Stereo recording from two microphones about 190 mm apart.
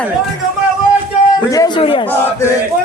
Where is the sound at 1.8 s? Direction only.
25° left (ahead or behind).